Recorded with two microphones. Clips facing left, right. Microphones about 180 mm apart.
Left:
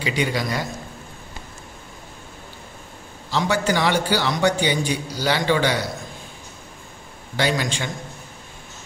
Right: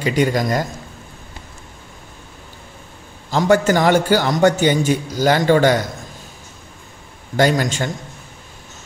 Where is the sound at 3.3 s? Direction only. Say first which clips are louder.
Right 7 dB; 45° right (ahead or behind).